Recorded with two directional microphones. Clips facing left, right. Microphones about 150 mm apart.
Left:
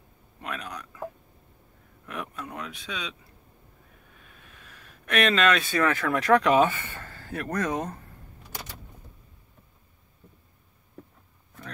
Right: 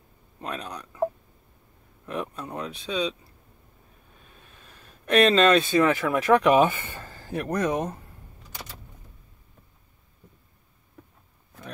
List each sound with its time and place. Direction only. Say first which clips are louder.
0.4 s speech: right 2 dB; 30° right (ahead or behind)
2.0 s a sound: right 4 dB; 30° right (ahead or behind)
4.3 s speech: even; 30° right (ahead or behind); by 8.0 s 15° right (ahead or behind)